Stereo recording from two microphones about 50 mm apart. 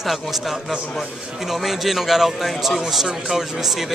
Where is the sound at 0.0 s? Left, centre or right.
Centre.